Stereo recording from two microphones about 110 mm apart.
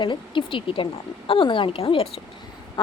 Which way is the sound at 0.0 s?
50° left (ahead or behind).